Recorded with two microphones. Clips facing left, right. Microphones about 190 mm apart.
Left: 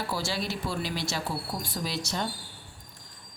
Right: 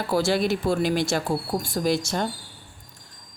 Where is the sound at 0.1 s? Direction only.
55° right (ahead or behind).